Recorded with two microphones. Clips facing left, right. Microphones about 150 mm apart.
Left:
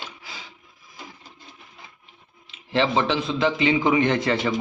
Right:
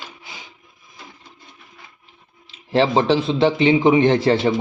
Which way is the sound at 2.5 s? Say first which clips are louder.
Right 5 dB; 35° right (ahead or behind).